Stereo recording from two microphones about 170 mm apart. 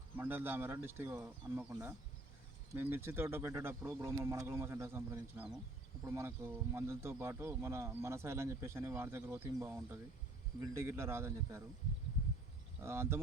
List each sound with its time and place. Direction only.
0.2 s speech: 10° right (ahead or behind)
12.8 s speech: 15° right (ahead or behind)